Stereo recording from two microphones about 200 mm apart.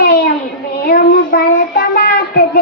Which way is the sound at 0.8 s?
50° left (ahead or behind).